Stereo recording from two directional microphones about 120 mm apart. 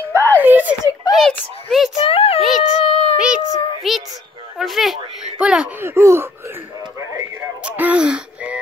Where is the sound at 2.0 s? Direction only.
50° left (ahead or behind).